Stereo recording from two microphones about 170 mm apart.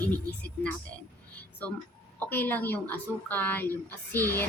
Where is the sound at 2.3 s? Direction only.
10° left (ahead or behind).